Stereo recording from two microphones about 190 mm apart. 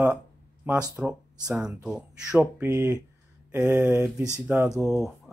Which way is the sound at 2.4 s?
15° right (ahead or behind).